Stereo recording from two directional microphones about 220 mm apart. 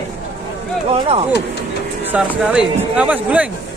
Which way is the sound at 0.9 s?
30° right (ahead or behind).